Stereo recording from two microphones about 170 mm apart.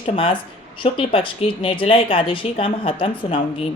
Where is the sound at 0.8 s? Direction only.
30° left (ahead or behind).